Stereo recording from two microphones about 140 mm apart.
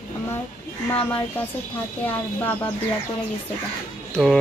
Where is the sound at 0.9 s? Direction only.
15° left (ahead or behind).